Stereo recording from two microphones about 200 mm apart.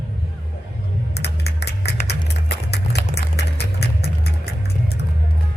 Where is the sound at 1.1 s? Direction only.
55° left (ahead or behind).